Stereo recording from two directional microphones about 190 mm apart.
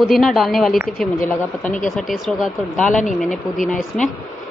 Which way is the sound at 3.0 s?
40° left (ahead or behind).